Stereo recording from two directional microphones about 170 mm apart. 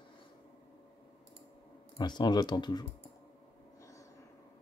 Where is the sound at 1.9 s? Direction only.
25° left (ahead or behind).